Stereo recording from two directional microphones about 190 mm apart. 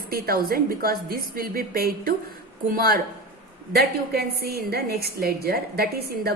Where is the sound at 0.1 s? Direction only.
50° right (ahead or behind).